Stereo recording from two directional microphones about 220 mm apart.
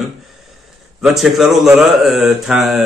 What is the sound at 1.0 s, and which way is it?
Speech, centre (ahead or behind).